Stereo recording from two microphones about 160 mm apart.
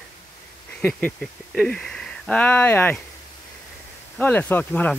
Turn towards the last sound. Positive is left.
turn(degrees=10)  # may be behind; listen again after turning